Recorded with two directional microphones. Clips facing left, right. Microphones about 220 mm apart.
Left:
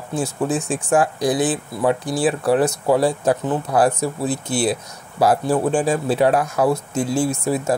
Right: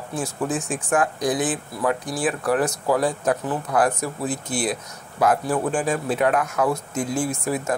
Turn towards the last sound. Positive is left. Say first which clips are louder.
# left 4 dB
turn(degrees=25)  # may be behind; listen again after turning